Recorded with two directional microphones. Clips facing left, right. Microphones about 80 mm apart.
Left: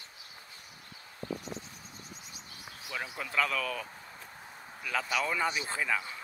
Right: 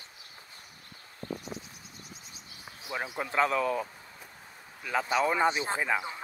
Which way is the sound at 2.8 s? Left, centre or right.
Right.